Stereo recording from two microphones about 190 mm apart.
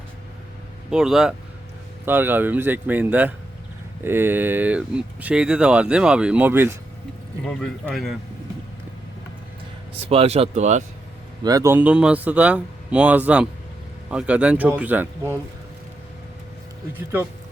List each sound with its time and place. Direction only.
0.9 s speech: 5° right (ahead or behind)
7.4 s speech: 5° left (ahead or behind)
10.0 s speech: 30° right (ahead or behind)
11.4 s speech: 15° right (ahead or behind)
17.0 s speech: 10° right (ahead or behind)